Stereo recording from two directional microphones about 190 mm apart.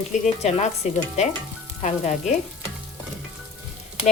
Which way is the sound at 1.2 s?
35° left (ahead or behind).